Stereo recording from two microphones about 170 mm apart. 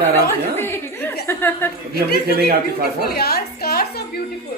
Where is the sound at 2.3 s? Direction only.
65° right (ahead or behind).